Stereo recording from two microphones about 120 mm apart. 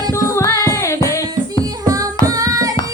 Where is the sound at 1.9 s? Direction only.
30° right (ahead or behind).